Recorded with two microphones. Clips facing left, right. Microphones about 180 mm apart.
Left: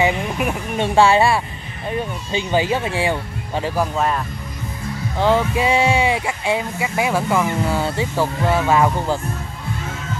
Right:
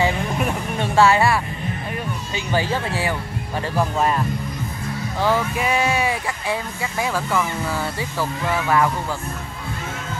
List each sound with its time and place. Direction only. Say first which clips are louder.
0.0 s music: left 2 dB; 10° left (ahead or behind)
1.0 s speech: even; 25° left (ahead or behind)
5.2 s speech: left 4 dB; 20° left (ahead or behind)